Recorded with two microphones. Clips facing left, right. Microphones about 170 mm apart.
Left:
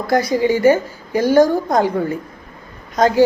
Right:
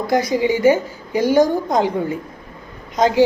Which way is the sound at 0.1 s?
15° right (ahead or behind).